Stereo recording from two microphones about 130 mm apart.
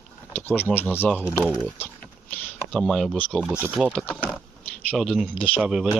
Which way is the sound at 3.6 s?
10° right (ahead or behind).